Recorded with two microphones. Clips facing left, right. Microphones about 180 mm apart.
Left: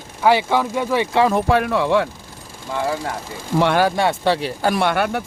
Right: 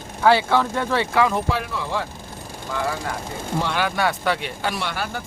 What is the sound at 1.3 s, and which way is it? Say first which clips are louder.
Speech: left 7 dB; 60° left (ahead or behind).